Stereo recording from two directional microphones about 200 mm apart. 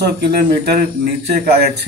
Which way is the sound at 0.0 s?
55° right (ahead or behind).